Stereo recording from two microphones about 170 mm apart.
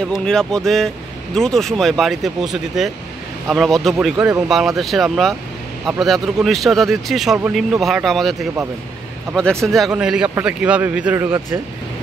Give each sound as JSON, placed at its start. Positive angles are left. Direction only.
{"t": 0.0, "sound": "speech", "side_deg": 5}
{"t": 4.2, "sound": "speech", "side_deg": -20}
{"t": 4.5, "sound": "speech", "side_deg": 0}